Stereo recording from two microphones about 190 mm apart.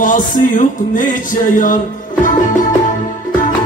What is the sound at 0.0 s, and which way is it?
Speech, 45° left (ahead or behind).